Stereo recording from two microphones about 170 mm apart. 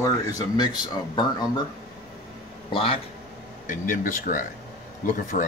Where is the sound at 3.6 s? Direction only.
50° left (ahead or behind).